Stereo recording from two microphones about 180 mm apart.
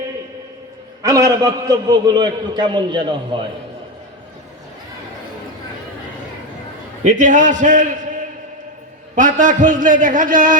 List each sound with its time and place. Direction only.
1.0 s a man's voice: 20° right (ahead or behind)
7.0 s a man's voice: 45° right (ahead or behind)